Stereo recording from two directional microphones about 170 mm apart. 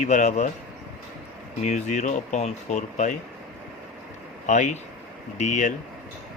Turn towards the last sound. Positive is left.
turn(degrees=45)  # may be behind; listen again after turning